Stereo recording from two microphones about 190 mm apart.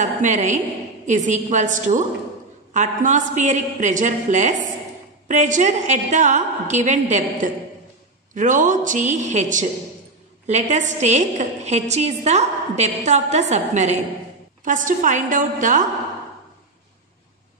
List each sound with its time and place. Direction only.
0.0 s a woman's voice: 40° right (ahead or behind)